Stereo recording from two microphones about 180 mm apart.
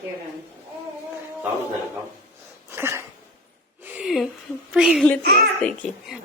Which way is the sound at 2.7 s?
15° right (ahead or behind).